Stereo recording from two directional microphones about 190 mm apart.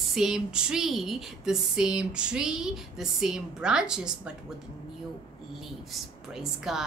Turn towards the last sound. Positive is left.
turn(degrees=0)  # may be behind; listen again after turning